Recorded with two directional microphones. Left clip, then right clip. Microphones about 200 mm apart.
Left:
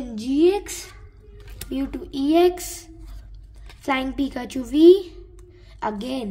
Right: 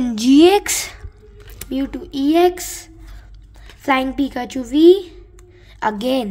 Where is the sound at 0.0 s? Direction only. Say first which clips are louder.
Right 8 dB; 40° right (ahead or behind).